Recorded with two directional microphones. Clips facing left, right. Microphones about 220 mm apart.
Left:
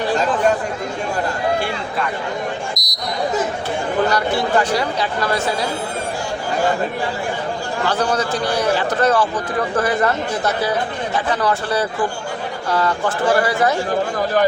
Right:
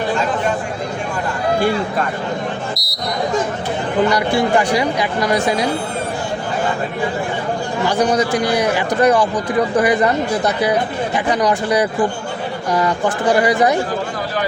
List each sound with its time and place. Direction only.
2.7 s basketball bounce: 15° left (ahead or behind)
4.1 s speech: 10° right (ahead or behind)
7.9 s speech: 15° right (ahead or behind)